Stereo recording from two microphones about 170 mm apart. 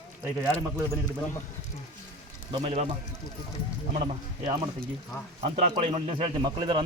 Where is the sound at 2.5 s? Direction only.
35° right (ahead or behind).